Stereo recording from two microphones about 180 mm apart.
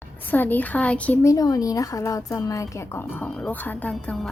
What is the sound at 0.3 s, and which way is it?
A woman's voice, 10° left (ahead or behind).